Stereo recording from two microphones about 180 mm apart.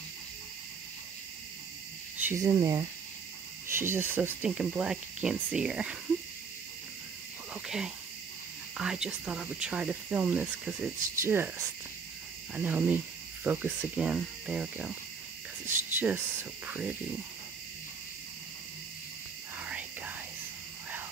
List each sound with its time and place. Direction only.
2.1 s speech: 15° right (ahead or behind)
7.5 s speech: 5° right (ahead or behind)
19.6 s whispering: 10° right (ahead or behind)